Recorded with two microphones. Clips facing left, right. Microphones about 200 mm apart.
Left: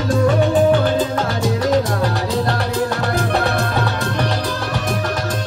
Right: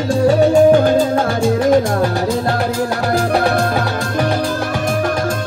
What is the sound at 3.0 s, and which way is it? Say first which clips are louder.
Music: right 4 dB; 45° right (ahead or behind).